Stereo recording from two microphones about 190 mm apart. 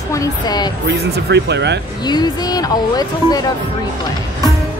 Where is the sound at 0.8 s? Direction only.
65° right (ahead or behind).